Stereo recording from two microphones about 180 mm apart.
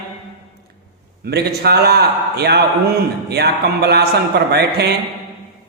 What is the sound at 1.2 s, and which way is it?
A man's voice, 65° right (ahead or behind).